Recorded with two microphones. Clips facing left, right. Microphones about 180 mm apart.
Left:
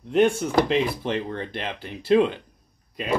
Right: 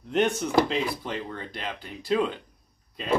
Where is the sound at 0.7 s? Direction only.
20° left (ahead or behind).